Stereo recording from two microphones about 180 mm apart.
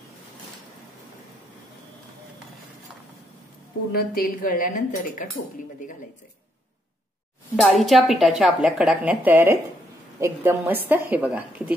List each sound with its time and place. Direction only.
3.9 s a woman's voice: 55° left (ahead or behind)
7.6 s a woman's voice: centre (ahead or behind)